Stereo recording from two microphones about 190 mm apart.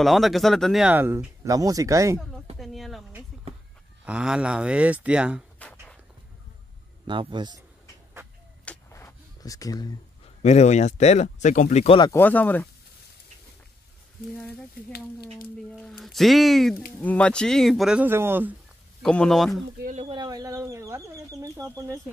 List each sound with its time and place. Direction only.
0.0 s speech: centre (ahead or behind); by 2.1 s 15° right (ahead or behind)
2.6 s speech: centre (ahead or behind)
4.0 s speech: 5° right (ahead or behind)
5.6 s a sound: 5° left (ahead or behind)
7.1 s speech: 25° right (ahead or behind)
8.6 s a sound: 15° left (ahead or behind)
10.4 s speech: 35° left (ahead or behind)
12.0 s speech: 10° left (ahead or behind)
15.8 s speech: centre (ahead or behind)
19.0 s speech: 5° left (ahead or behind)
19.8 s speech: 40° right (ahead or behind)
20.1 s chicken: 20° right (ahead or behind)